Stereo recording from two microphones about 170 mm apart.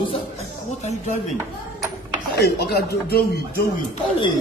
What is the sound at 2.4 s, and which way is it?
Speech, 70° left (ahead or behind).